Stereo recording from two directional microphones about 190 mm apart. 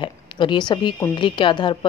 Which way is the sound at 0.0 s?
25° left (ahead or behind).